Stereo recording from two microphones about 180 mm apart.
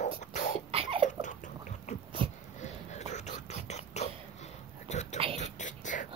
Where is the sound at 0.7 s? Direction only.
30° right (ahead or behind).